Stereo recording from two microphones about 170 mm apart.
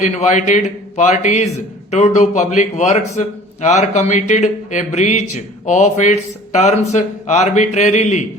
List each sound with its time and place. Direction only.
0.0 s a man's voice: 40° left (ahead or behind)